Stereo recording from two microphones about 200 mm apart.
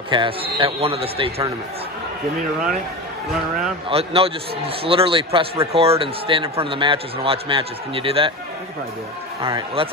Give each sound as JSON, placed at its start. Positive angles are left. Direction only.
{"t": 0.1, "sound": "a man's voice", "side_deg": -25}
{"t": 3.9, "sound": "a man's voice", "side_deg": -30}
{"t": 9.4, "sound": "a man's voice", "side_deg": -25}